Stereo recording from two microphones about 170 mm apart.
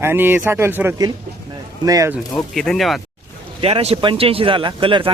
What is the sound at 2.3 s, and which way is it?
Speech, centre (ahead or behind).